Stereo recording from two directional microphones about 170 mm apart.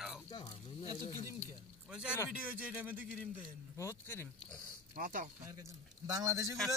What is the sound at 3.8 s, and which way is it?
Speech, 15° left (ahead or behind).